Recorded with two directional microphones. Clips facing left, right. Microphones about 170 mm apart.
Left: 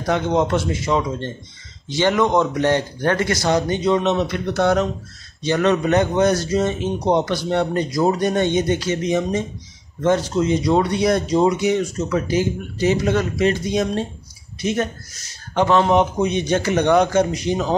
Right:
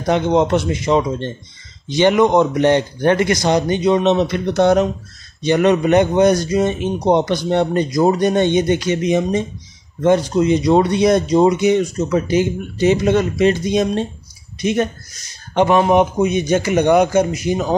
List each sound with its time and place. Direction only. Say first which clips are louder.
0.0 s speech: right 4 dB; 20° right (ahead or behind)